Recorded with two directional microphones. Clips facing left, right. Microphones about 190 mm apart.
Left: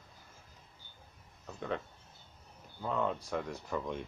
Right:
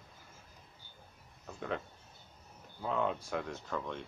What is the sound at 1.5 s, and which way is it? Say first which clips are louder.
Speech: left 1 dB; centre (ahead or behind).